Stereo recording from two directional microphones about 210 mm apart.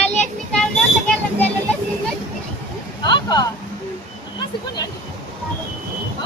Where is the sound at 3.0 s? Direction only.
20° left (ahead or behind).